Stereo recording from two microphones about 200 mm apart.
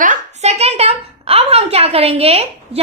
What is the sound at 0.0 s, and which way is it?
A woman's voice, 35° right (ahead or behind).